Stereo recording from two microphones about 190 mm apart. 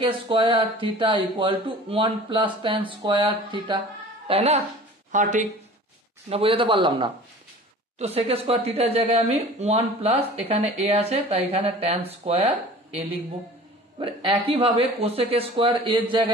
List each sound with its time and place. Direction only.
0.0 s speech: 25° right (ahead or behind); by 5.5 s 40° right (ahead or behind)
6.2 s speech: 30° right (ahead or behind)
13.9 s speech: 25° right (ahead or behind)